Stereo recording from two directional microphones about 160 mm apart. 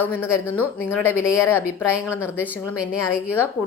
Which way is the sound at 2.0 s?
15° left (ahead or behind).